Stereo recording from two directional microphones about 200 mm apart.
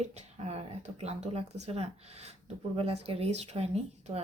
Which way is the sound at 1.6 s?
30° right (ahead or behind).